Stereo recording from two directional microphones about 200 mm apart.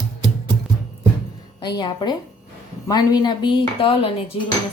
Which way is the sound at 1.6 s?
20° left (ahead or behind).